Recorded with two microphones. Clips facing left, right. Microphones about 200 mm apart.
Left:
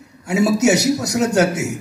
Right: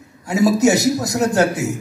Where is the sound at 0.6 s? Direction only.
70° left (ahead or behind).